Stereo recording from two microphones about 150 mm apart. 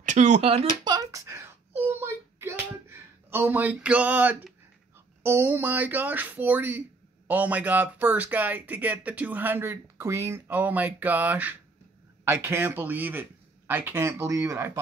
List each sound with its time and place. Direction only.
0.0 s speech: 55° right (ahead or behind)
0.8 s a sound: 25° right (ahead or behind)
5.2 s speech: 15° right (ahead or behind)